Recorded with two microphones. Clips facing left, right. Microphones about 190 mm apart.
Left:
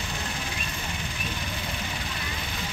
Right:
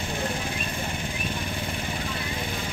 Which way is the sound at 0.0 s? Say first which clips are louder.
Right 5 dB; 55° right (ahead or behind).